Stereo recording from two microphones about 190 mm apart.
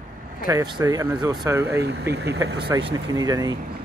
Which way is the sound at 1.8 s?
60° right (ahead or behind).